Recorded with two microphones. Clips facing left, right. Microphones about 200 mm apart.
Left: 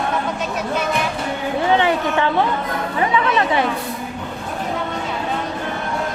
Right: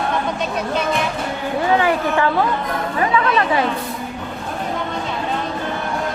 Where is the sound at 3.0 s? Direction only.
25° left (ahead or behind).